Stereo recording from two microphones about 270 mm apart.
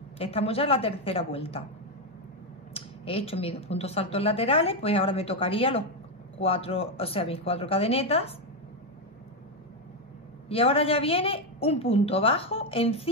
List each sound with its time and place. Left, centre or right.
0.2 s speech: left
2.7 s speech: left
10.5 s speech: left